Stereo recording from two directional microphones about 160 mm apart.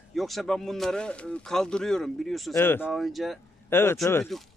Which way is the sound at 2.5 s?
15° left (ahead or behind).